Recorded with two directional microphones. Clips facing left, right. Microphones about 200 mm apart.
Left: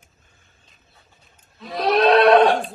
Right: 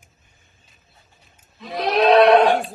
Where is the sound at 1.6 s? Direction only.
Centre (ahead or behind).